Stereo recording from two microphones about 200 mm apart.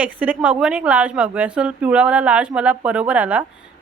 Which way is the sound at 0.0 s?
5° right (ahead or behind).